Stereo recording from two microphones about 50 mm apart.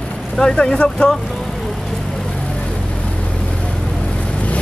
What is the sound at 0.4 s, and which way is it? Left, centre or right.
Speech, centre.